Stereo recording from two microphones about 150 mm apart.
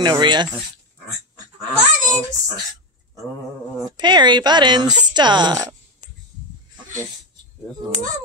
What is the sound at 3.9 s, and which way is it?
Speech, 30° right (ahead or behind).